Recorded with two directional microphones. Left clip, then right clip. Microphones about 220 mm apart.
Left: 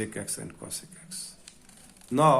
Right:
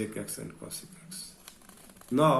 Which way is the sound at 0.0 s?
45° left (ahead or behind).